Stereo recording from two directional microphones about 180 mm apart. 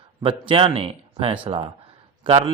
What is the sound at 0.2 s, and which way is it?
Speech, 30° right (ahead or behind).